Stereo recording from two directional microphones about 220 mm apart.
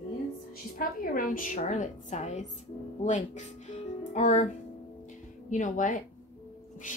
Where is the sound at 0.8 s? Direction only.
40° left (ahead or behind).